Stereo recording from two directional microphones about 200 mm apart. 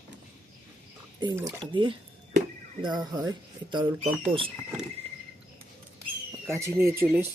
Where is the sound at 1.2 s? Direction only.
20° right (ahead or behind).